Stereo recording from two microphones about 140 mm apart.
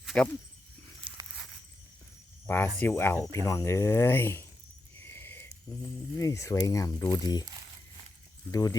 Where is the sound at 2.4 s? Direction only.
15° left (ahead or behind).